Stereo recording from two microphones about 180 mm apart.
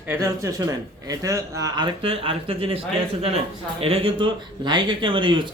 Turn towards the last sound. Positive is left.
turn(degrees=-25)  # may be behind; listen again after turning